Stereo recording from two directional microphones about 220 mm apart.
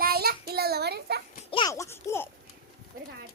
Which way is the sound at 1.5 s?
20° left (ahead or behind).